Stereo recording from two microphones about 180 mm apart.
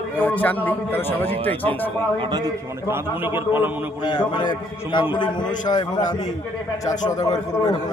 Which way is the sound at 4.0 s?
25° left (ahead or behind).